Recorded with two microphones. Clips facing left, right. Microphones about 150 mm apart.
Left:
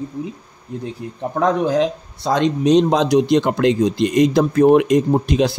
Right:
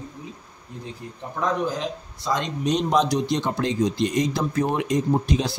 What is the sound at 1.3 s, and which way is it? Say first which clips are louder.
Speech: left 8 dB; 70° left (ahead or behind).